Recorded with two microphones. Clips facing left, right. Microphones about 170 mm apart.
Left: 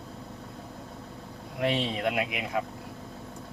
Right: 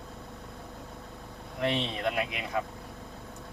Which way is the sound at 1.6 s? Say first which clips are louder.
Left 2 dB; 10° left (ahead or behind).